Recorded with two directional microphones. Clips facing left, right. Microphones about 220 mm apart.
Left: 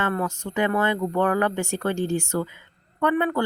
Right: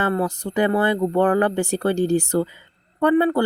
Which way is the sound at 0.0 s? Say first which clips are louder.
Right 4 dB; 35° right (ahead or behind).